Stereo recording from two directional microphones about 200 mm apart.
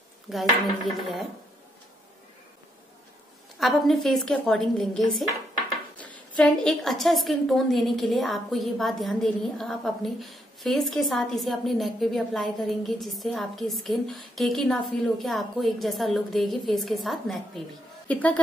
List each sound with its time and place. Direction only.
0.3 s a woman's voice: centre (ahead or behind)
3.5 s a woman's voice: centre (ahead or behind)